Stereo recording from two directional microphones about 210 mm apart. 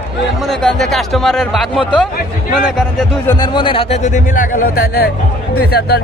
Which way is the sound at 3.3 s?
20° left (ahead or behind).